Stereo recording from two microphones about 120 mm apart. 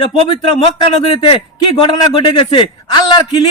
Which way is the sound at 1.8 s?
40° left (ahead or behind).